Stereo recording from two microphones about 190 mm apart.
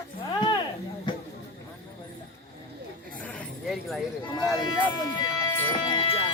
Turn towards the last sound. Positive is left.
turn(degrees=25)  # may be behind; listen again after turning